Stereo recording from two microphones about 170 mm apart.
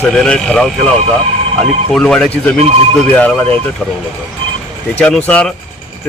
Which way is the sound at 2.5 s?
35° right (ahead or behind).